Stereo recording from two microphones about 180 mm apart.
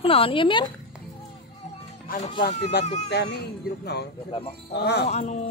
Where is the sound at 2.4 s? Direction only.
65° left (ahead or behind).